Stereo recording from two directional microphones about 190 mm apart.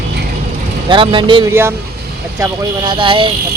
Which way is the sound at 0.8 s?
25° right (ahead or behind).